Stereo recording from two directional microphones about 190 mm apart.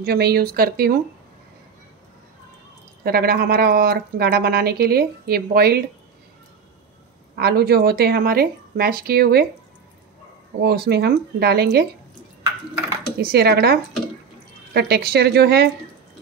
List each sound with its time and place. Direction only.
0.0 s speech: 55° right (ahead or behind)
3.0 s speech: 55° right (ahead or behind)
7.3 s speech: 55° right (ahead or behind)
10.6 s speech: 55° right (ahead or behind)
13.2 s speech: 55° right (ahead or behind)